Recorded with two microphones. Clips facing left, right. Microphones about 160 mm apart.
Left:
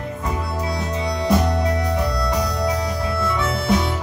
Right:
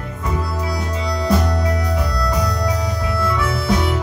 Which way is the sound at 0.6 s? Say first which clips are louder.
Even; 25° left (ahead or behind).